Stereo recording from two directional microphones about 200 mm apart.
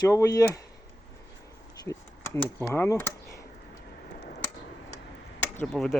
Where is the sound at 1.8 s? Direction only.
15° left (ahead or behind).